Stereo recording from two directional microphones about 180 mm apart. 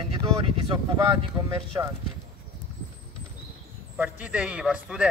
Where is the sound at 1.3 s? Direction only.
10° right (ahead or behind).